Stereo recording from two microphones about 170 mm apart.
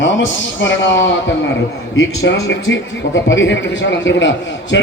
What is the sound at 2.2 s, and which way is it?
A man's voice, 90° left.